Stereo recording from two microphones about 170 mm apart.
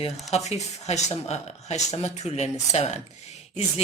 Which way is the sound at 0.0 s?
40° left (ahead or behind).